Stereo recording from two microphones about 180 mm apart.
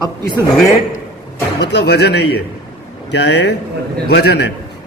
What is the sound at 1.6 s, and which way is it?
Speech, 70° left (ahead or behind).